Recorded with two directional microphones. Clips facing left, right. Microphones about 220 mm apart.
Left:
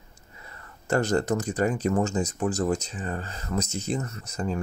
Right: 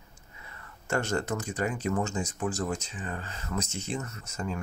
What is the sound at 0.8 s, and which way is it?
Speech, 35° left (ahead or behind).